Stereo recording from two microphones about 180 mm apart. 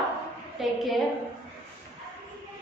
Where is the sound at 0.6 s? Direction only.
Centre (ahead or behind).